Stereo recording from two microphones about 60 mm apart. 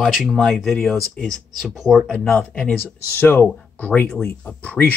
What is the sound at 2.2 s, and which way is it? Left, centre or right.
Speech, centre.